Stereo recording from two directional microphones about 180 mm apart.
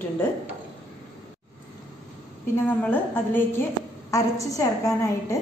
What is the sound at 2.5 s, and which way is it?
A woman's voice, 10° left (ahead or behind).